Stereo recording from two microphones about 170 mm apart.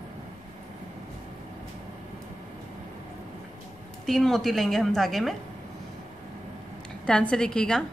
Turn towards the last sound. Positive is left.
turn(degrees=5)  # may be behind; listen again after turning